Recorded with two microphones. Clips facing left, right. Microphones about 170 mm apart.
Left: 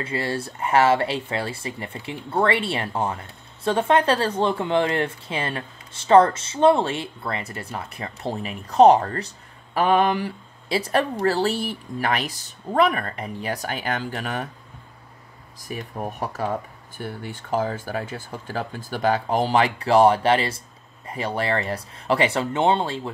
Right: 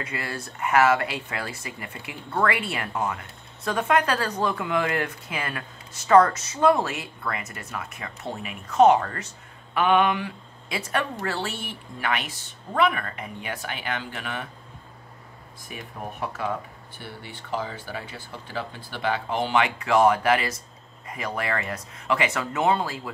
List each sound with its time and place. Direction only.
0.0 s speech: 30° left (ahead or behind)
15.7 s speech: 40° left (ahead or behind)